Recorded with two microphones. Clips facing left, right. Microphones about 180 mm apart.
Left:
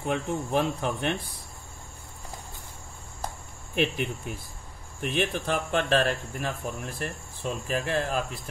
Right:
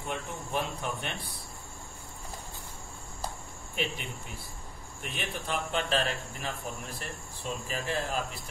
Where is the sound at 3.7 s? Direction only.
60° left (ahead or behind).